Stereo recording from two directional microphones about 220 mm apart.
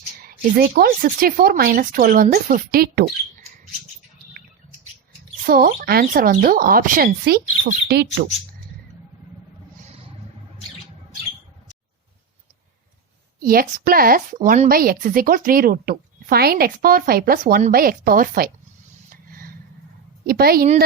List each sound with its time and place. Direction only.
0.2 s speech: 40° right (ahead or behind)
5.5 s speech: 45° right (ahead or behind)
13.4 s speech: 40° right (ahead or behind)
19.1 s a sound: 40° right (ahead or behind)
20.2 s speech: 45° right (ahead or behind)